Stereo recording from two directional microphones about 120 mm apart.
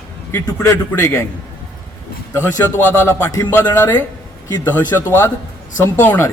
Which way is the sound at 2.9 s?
20° left (ahead or behind).